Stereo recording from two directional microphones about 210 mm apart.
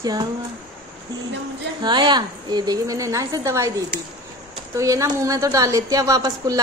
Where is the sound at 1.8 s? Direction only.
20° right (ahead or behind).